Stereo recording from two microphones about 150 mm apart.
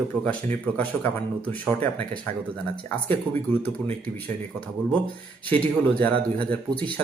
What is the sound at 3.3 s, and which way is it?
Speech, 15° left (ahead or behind).